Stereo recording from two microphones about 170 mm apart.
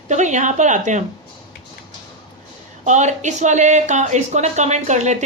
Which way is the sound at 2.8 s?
45° right (ahead or behind).